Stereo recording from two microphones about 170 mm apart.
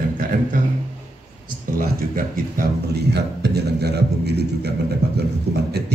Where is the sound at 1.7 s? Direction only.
55° right (ahead or behind).